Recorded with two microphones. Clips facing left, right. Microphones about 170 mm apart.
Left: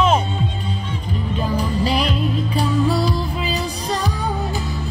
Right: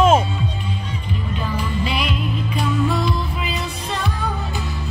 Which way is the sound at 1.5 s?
35° left (ahead or behind).